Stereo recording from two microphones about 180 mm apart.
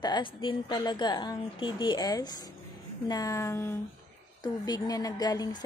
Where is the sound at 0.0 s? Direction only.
25° left (ahead or behind).